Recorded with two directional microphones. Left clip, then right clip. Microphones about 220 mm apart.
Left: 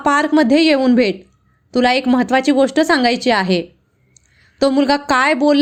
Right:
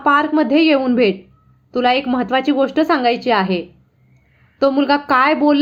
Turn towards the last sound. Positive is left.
turn(degrees=35)  # may be behind; listen again after turning